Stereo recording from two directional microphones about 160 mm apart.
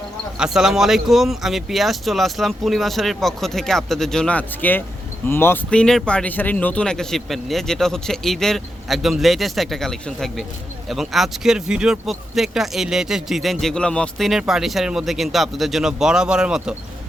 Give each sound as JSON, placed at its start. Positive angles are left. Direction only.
{"t": 0.3, "sound": "speech", "side_deg": -5}